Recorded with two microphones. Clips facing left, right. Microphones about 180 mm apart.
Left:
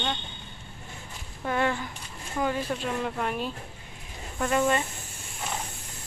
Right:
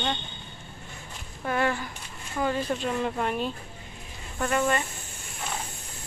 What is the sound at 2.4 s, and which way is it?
Speech, centre (ahead or behind).